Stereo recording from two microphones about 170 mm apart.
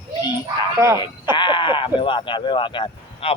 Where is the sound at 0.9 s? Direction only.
25° left (ahead or behind).